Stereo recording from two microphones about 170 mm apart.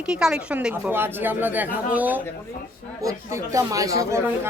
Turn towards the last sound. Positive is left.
turn(degrees=-20)  # may be behind; listen again after turning